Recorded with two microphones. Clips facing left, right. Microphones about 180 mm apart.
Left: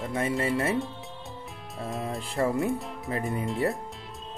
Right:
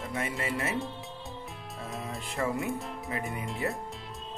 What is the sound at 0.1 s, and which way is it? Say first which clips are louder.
Speech: left 7 dB; 30° left (ahead or behind).